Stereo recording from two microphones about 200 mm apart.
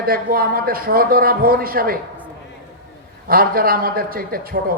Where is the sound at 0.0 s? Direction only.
45° right (ahead or behind).